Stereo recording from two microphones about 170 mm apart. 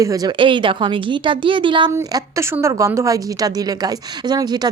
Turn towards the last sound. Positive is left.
turn(degrees=-25)  # may be behind; listen again after turning